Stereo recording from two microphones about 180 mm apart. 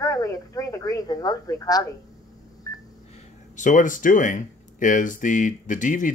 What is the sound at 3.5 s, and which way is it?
Speech, 45° left (ahead or behind).